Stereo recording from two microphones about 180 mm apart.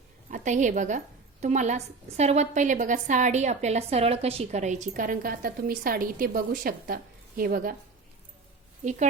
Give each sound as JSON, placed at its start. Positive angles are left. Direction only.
{"t": 0.3, "sound": "a woman's voice", "side_deg": -45}
{"t": 8.8, "sound": "a woman's voice", "side_deg": -40}